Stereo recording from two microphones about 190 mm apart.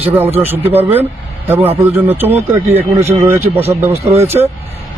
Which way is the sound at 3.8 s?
10° right (ahead or behind).